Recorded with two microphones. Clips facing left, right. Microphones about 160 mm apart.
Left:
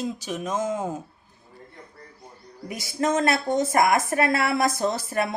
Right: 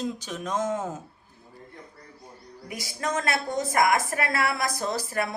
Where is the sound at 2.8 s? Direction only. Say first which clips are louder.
Left 6 dB; 25° left (ahead or behind).